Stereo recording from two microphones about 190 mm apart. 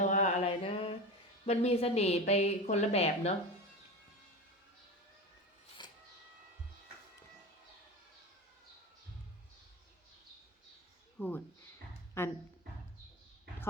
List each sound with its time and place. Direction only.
0.0 s mantra: 40° left (ahead or behind)
1.5 s a woman's voice: 35° left (ahead or behind)
5.8 s a sound: 25° left (ahead or behind)
11.2 s speech: 10° left (ahead or behind)